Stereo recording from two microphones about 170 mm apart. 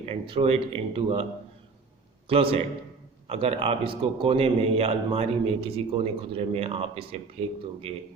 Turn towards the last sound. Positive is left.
turn(degrees=-35)  # may be behind; listen again after turning